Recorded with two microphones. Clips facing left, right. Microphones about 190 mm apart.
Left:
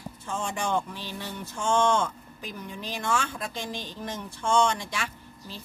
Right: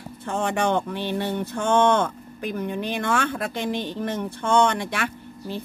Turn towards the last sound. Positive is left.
turn(degrees=-60)  # may be behind; listen again after turning